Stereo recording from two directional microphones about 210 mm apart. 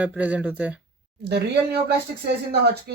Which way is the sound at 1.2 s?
50° right (ahead or behind).